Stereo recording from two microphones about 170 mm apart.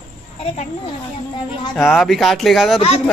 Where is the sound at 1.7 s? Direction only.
Centre (ahead or behind).